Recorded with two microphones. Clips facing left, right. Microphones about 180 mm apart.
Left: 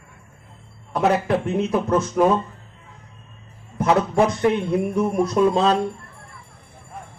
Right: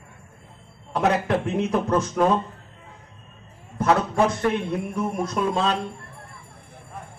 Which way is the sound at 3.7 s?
15° left (ahead or behind).